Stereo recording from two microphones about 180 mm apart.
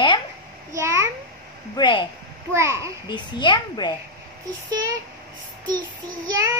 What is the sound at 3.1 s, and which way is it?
Speech, 25° left (ahead or behind).